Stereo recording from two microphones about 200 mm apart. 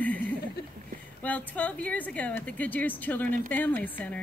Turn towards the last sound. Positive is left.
turn(degrees=10)  # may be behind; listen again after turning